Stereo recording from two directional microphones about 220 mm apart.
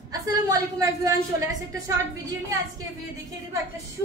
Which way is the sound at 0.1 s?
15° right (ahead or behind).